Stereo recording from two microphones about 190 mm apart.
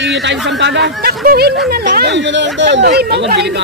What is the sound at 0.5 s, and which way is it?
Speech, 65° right (ahead or behind).